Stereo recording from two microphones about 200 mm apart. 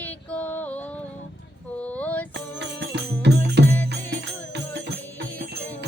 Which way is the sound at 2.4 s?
60° right (ahead or behind).